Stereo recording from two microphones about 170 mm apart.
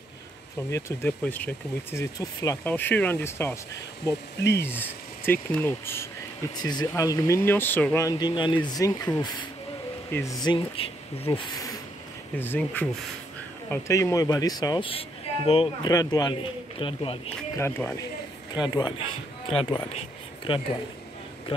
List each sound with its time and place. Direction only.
0.7 s speech: 15° left (ahead or behind)
4.4 s speech: 85° left
4.6 s speech: 10° left (ahead or behind)
6.5 s speech: 25° left (ahead or behind)
12.4 s speech: 10° left (ahead or behind); by 15.9 s 35° left (ahead or behind)
15.9 s speech: 20° left (ahead or behind)
17.6 s speech: 15° left (ahead or behind)
18.5 s speech: 25° left (ahead or behind)